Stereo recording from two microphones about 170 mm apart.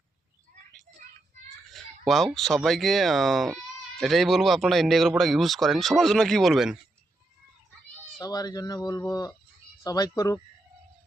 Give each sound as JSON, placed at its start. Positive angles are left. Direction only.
{"t": 1.7, "sound": "speech", "side_deg": 0}
{"t": 8.2, "sound": "speech", "side_deg": 20}